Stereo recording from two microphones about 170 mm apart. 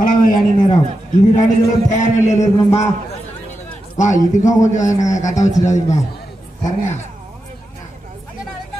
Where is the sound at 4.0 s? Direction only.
45° left (ahead or behind).